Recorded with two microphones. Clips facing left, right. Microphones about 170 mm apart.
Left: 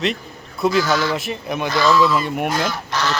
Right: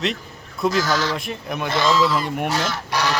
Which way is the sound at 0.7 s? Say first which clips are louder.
Left 4 dB; 40° right (ahead or behind).